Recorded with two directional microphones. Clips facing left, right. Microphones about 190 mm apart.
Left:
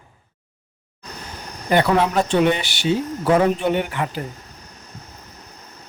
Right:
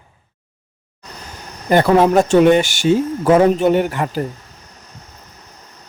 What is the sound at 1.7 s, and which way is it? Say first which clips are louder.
Speech: right 5 dB; 45° right (ahead or behind).